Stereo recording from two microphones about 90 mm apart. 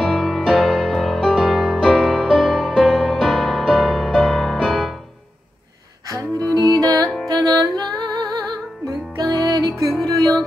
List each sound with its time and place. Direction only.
0.0 s music: centre (ahead or behind)
6.0 s music: 40° right (ahead or behind)